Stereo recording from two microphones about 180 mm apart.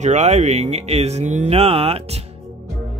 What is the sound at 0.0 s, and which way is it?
Speech, 40° right (ahead or behind).